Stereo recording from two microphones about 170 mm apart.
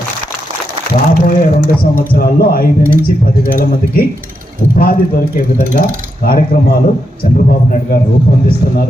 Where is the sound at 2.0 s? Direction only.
60° left (ahead or behind).